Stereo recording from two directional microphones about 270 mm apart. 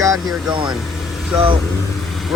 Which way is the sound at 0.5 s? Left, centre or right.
Centre.